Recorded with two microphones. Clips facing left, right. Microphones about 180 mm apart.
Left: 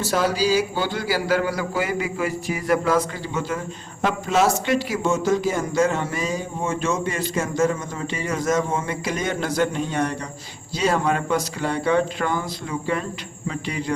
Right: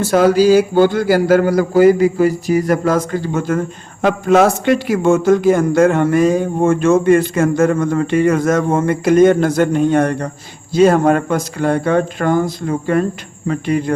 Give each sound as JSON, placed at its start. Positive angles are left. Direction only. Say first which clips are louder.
{"t": 0.0, "sound": "a man's voice", "louder": "right 10 dB", "side_deg": -50}